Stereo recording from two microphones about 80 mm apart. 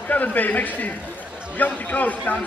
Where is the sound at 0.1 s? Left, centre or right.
Left.